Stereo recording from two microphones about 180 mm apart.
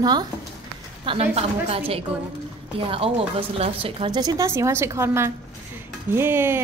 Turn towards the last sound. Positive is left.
turn(degrees=-10)  # may be behind; listen again after turning